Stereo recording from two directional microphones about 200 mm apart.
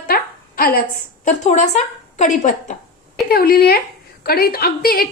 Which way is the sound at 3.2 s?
50° left (ahead or behind).